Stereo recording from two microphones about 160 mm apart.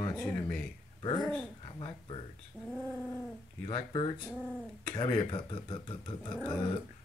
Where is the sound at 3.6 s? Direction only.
30° left (ahead or behind).